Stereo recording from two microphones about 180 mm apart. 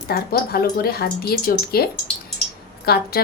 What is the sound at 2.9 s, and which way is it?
Speech, 60° left (ahead or behind).